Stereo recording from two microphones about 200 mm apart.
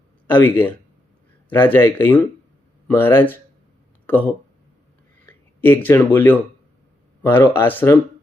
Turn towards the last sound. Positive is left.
turn(degrees=10)  # may be behind; listen again after turning